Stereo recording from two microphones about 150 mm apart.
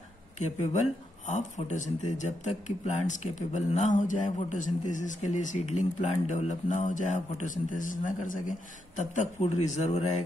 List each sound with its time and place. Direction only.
0.7 s speech: 50° left (ahead or behind)